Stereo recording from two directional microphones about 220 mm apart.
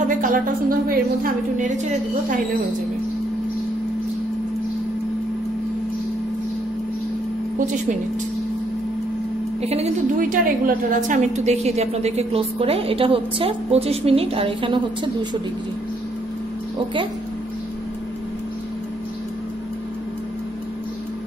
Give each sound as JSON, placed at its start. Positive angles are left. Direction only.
{"t": 0.2, "sound": "a woman's voice", "side_deg": -40}
{"t": 9.6, "sound": "a woman's voice", "side_deg": -30}